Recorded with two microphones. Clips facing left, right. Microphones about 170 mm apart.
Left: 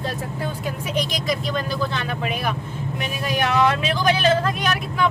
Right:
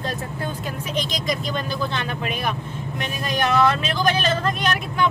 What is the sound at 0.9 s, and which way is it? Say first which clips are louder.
Speech: left 1 dB; 10° left (ahead or behind).